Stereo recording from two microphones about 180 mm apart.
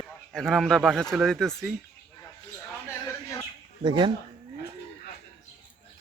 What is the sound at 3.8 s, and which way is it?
Speech, 25° right (ahead or behind).